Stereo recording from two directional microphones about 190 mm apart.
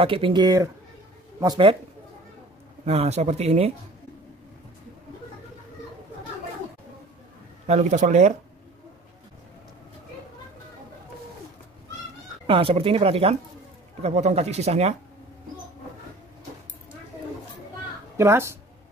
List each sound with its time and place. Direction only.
0.0 s speech: 25° right (ahead or behind)
2.8 s speech: 35° right (ahead or behind)
7.6 s speech: 35° right (ahead or behind)
12.4 s speech: 30° right (ahead or behind)
18.1 s speech: 15° right (ahead or behind)